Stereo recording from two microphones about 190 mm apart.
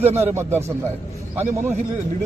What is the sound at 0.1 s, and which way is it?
Speech, 10° right (ahead or behind).